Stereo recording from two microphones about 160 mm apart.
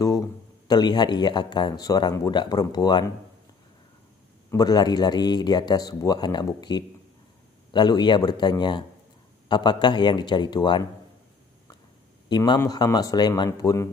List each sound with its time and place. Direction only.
0.7 s speech: 25° left (ahead or behind)
4.5 s speech: 25° left (ahead or behind)
12.3 s speech: 25° left (ahead or behind)